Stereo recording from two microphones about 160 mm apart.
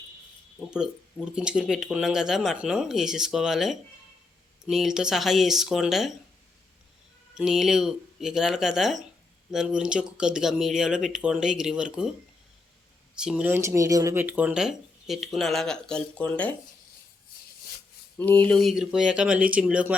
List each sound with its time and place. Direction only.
0.7 s speech: 5° right (ahead or behind)
7.3 s speech: centre (ahead or behind)
13.1 s speech: 5° right (ahead or behind)
18.2 s speech: 10° left (ahead or behind); by 20.0 s 5° right (ahead or behind)